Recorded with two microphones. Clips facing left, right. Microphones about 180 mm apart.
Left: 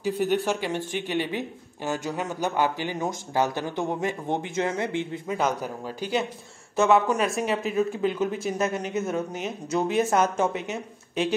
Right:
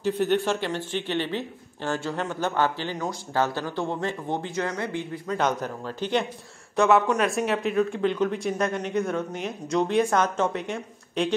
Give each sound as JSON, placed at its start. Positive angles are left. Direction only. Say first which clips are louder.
{"t": 0.0, "sound": "speech", "louder": "right 1 dB", "side_deg": 10}
{"t": 5.3, "sound": "speech", "louder": "right 1 dB", "side_deg": 10}